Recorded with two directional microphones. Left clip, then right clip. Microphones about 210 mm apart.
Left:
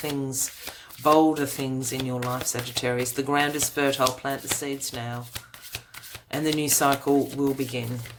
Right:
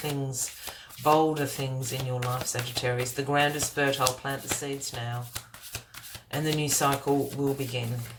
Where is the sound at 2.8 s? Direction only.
45° left (ahead or behind).